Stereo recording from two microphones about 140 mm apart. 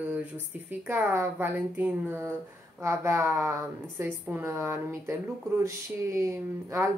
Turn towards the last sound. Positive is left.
turn(degrees=-20)  # may be behind; listen again after turning